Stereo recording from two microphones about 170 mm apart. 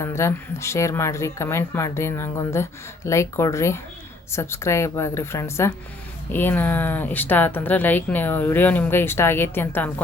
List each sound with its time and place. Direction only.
0.0 s speech: 15° left (ahead or behind)